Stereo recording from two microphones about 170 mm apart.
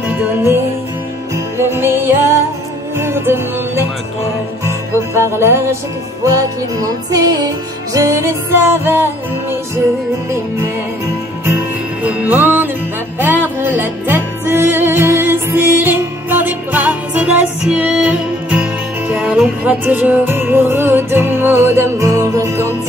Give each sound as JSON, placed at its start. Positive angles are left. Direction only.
{"t": 0.1, "sound": "music", "side_deg": -10}
{"t": 5.1, "sound": "music", "side_deg": -15}
{"t": 6.8, "sound": "music", "side_deg": -20}
{"t": 12.0, "sound": "music", "side_deg": -10}